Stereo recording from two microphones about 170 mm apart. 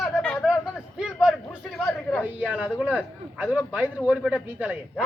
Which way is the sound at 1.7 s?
5° left (ahead or behind).